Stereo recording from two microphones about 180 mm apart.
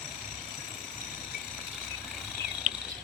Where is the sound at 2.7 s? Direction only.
45° right (ahead or behind).